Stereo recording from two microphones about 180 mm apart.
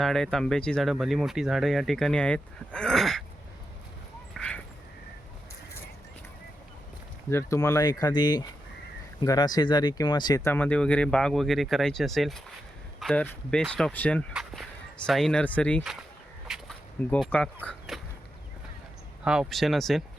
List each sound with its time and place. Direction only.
0.0 s speech: centre (ahead or behind)
4.4 s duck: 5° left (ahead or behind)
7.3 s speech: 15° left (ahead or behind)
19.2 s speech: 5° right (ahead or behind)